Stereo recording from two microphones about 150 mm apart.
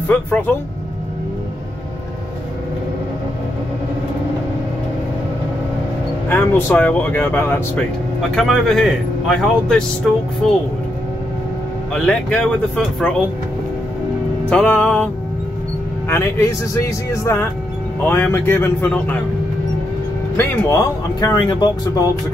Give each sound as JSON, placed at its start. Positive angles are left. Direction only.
{"t": 0.1, "sound": "speech", "side_deg": 10}
{"t": 6.2, "sound": "speech", "side_deg": 15}
{"t": 8.4, "sound": "a man's voice", "side_deg": 0}
{"t": 11.9, "sound": "a man's voice", "side_deg": 5}
{"t": 14.5, "sound": "speech", "side_deg": 10}
{"t": 16.1, "sound": "speech", "side_deg": 15}
{"t": 20.3, "sound": "speech", "side_deg": 25}